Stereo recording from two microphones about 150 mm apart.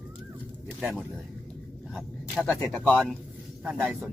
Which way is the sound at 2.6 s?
Centre (ahead or behind).